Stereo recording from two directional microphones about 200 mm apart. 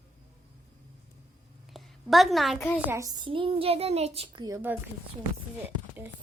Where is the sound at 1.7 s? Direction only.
Centre (ahead or behind).